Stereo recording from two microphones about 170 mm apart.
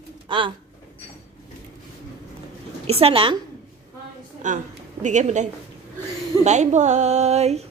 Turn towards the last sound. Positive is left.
turn(degrees=-40)  # may be behind; listen again after turning